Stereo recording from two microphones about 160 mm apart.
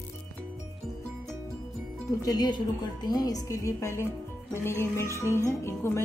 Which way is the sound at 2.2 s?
25° left (ahead or behind).